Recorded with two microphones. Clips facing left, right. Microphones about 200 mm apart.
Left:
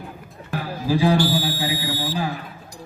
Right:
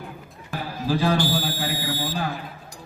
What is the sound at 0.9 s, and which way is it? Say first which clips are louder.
Speech: left 3 dB; 10° left (ahead or behind).